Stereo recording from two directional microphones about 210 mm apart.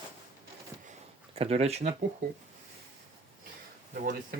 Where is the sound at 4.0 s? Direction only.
45° right (ahead or behind).